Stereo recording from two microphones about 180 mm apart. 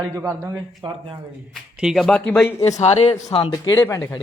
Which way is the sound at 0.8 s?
30° right (ahead or behind).